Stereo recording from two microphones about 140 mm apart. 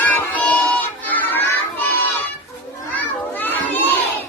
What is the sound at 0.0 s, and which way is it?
Music, 10° left (ahead or behind).